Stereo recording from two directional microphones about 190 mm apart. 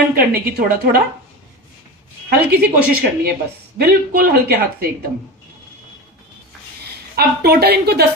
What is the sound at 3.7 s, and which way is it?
Speech, 55° right (ahead or behind).